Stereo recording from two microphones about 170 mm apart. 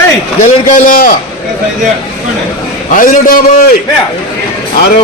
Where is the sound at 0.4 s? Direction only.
55° left (ahead or behind).